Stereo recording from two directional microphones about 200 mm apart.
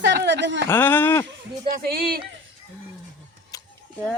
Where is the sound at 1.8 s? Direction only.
50° right (ahead or behind).